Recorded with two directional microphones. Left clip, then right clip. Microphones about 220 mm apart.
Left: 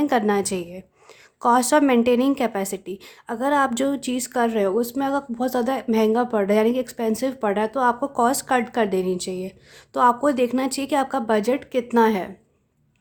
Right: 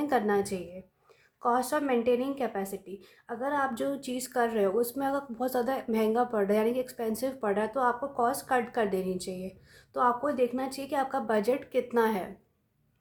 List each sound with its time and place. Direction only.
0.0 s a woman's voice: 35° left (ahead or behind)